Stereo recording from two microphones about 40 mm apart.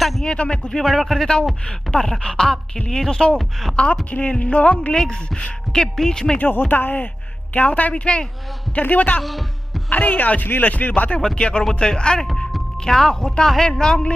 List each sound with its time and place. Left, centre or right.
0.2 s speech: left
0.8 s speech: centre; by 4.7 s left
4.9 s speech: centre
6.3 s speech: left
7.5 s speech: left
7.9 s speech: left
8.7 s speech: left
11.3 s speech: left